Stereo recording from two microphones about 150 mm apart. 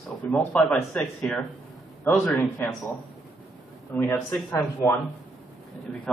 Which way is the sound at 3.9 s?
15° left (ahead or behind).